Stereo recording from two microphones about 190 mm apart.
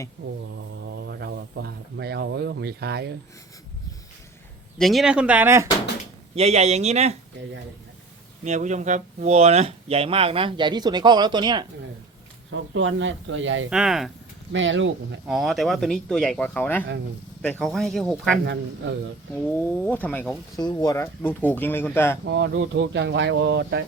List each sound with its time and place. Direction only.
0.5 s speech: 65° right (ahead or behind)
4.8 s speech: centre (ahead or behind)
6.3 s speech: 35° right (ahead or behind)
8.4 s speech: 40° right (ahead or behind); by 11.6 s 25° right (ahead or behind)
12.5 s speech: 75° right (ahead or behind)
13.7 s speech: 5° right (ahead or behind)
14.5 s speech: 80° right
15.3 s speech: centre (ahead or behind)
18.4 s speech: 70° right (ahead or behind)
19.5 s speech: 10° left (ahead or behind)
20.6 s speech: 20° left (ahead or behind)
22.2 s speech: 65° right (ahead or behind)